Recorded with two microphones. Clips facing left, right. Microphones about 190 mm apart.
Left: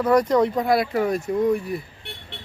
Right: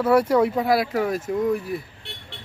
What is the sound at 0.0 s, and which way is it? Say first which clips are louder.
Speech: even; 5° right (ahead or behind).